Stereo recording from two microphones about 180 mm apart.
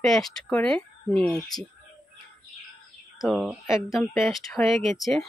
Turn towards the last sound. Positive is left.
turn(degrees=0)  # may be behind; listen again after turning